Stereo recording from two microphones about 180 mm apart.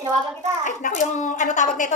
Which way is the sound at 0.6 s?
45° left (ahead or behind).